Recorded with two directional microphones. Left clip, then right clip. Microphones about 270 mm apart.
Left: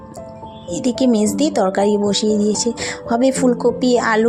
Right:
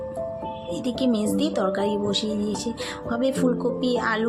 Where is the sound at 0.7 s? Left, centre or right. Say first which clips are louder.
Left 8 dB; left.